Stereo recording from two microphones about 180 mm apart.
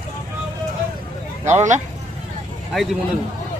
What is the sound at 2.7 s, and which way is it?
Speech, centre (ahead or behind).